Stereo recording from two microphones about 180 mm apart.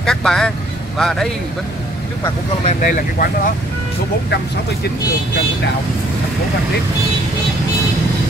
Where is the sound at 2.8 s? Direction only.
55° left (ahead or behind).